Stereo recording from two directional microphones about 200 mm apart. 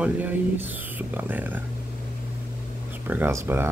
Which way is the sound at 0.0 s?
10° right (ahead or behind).